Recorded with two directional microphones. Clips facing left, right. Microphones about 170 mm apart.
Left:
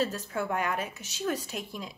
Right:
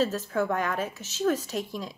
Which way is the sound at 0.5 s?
10° left (ahead or behind).